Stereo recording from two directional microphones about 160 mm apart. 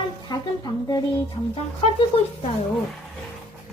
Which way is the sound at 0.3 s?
25° left (ahead or behind).